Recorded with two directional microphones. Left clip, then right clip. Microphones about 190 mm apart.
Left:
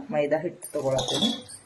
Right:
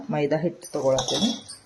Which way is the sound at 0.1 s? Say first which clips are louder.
Right 1 dB; 55° right (ahead or behind).